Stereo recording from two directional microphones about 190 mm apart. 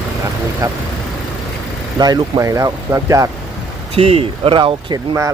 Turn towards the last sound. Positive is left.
turn(degrees=-25)  # may be behind; listen again after turning